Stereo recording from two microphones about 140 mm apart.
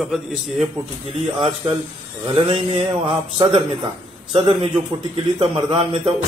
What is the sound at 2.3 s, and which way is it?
Speech, 40° right (ahead or behind).